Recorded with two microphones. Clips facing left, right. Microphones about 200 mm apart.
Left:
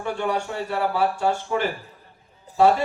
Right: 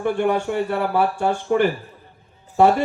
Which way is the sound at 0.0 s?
55° right (ahead or behind).